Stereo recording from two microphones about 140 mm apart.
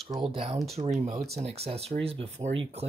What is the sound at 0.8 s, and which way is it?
Speech, 50° right (ahead or behind).